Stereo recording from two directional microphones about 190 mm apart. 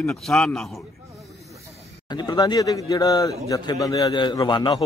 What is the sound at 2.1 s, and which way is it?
Speech, 20° left (ahead or behind).